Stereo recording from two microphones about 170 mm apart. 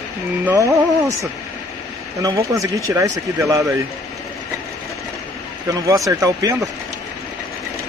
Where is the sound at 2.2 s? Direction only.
20° right (ahead or behind).